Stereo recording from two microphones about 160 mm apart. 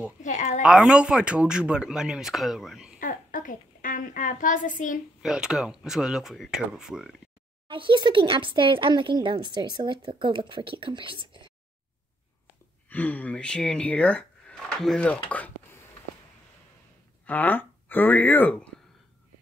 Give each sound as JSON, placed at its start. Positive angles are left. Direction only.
{"t": 0.2, "sound": "a woman's voice", "side_deg": 55}
{"t": 0.6, "sound": "speech", "side_deg": -5}
{"t": 3.0, "sound": "a sound", "side_deg": 55}
{"t": 5.2, "sound": "speech", "side_deg": -5}
{"t": 7.6, "sound": "speech", "side_deg": -30}
{"t": 12.9, "sound": "speech", "side_deg": 10}
{"t": 17.3, "sound": "speech", "side_deg": 10}